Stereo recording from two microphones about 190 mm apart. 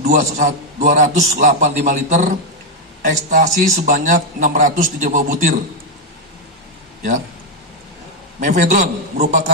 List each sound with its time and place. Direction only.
0.0 s a man's voice: 40° right (ahead or behind)
8.4 s a man's voice: 45° right (ahead or behind)